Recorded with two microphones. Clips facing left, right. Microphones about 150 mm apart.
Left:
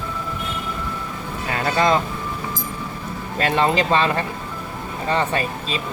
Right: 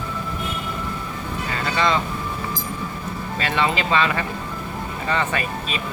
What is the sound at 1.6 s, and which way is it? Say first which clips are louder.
Speech: left 3 dB; 45° left (ahead or behind).